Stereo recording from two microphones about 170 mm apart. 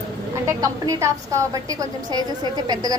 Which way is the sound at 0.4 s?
20° right (ahead or behind).